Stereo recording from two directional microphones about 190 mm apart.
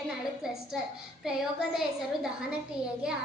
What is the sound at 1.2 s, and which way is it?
Speech, centre (ahead or behind).